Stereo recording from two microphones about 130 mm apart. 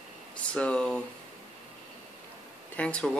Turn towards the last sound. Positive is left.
turn(degrees=5)  # may be behind; listen again after turning